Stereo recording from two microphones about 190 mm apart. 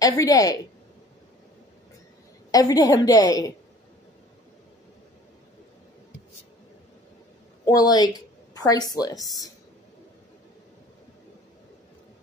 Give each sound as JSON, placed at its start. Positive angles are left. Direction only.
{"t": 0.0, "sound": "speech", "side_deg": 20}
{"t": 2.5, "sound": "a woman's voice", "side_deg": 20}
{"t": 7.6, "sound": "a woman's voice", "side_deg": 20}